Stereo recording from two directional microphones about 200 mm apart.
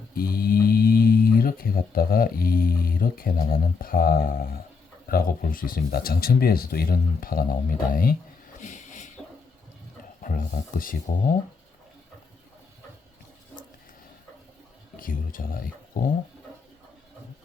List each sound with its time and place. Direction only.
0.1 s speech: 45° left (ahead or behind)
8.6 s a sound: 40° left (ahead or behind)
10.2 s speech: 45° left (ahead or behind)
14.9 s speech: 45° left (ahead or behind)